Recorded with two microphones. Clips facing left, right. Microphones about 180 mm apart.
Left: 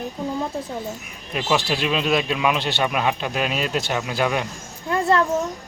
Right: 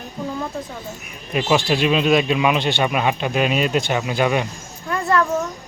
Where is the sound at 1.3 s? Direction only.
5° right (ahead or behind).